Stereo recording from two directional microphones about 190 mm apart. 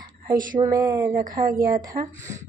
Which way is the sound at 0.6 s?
20° right (ahead or behind).